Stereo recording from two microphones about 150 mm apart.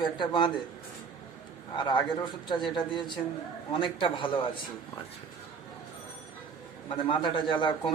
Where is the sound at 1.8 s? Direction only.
30° left (ahead or behind).